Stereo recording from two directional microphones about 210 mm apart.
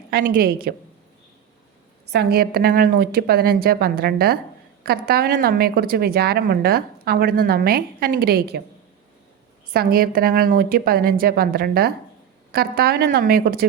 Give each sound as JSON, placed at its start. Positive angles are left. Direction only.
{"t": 0.1, "sound": "a woman's voice", "side_deg": -45}
{"t": 2.0, "sound": "a woman's voice", "side_deg": -50}
{"t": 9.7, "sound": "a woman's voice", "side_deg": -45}